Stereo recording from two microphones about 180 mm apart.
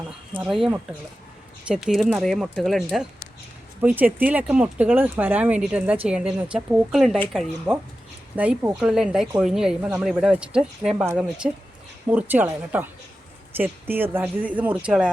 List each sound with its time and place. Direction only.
0.3 s speech: centre (ahead or behind)